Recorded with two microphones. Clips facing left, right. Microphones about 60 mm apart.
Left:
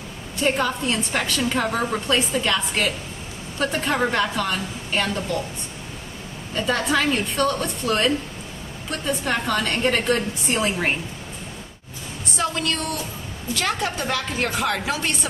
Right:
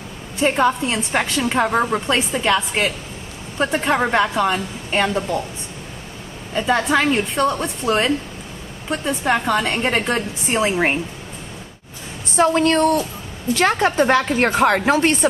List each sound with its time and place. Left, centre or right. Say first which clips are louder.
0.4 s a woman's voice: right 5 dB; right
6.7 s a woman's voice: right 4 dB; right
12.4 s a woman's voice: right 10 dB; right